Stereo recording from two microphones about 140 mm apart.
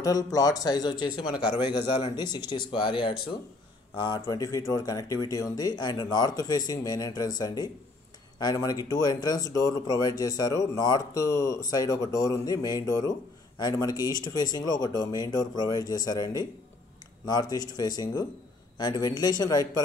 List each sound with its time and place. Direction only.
0.0 s speech: 25° left (ahead or behind)
4.0 s speech: 30° left (ahead or behind)